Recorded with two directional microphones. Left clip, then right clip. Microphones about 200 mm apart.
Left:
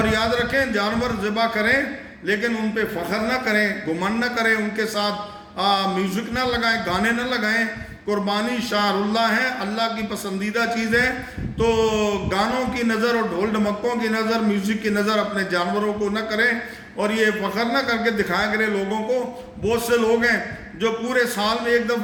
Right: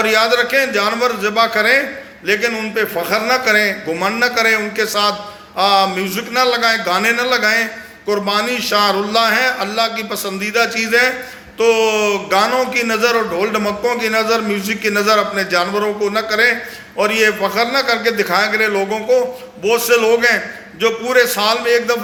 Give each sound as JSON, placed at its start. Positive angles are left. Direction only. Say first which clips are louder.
{"t": 0.0, "sound": "a man's voice", "louder": "right 7 dB", "side_deg": 20}